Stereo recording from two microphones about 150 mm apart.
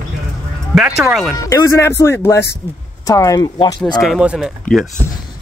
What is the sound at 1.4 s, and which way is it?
Speech, 20° left (ahead or behind).